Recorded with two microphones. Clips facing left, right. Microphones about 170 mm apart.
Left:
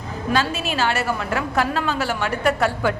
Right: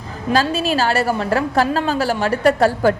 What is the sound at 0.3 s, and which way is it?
A woman's voice, 35° right (ahead or behind).